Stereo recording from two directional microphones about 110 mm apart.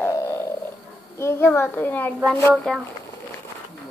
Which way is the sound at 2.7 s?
5° left (ahead or behind).